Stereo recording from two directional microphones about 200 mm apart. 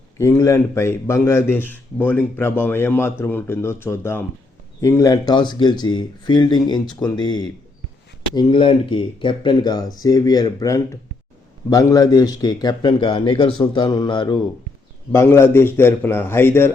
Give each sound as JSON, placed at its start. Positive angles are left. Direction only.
{"t": 0.2, "sound": "a man's voice", "side_deg": 15}